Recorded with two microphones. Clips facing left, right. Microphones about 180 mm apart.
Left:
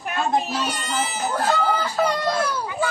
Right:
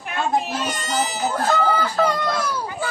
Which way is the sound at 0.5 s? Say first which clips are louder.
Right 1 dB; 50° right (ahead or behind).